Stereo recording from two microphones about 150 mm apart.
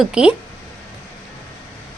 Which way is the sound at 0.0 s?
5° right (ahead or behind).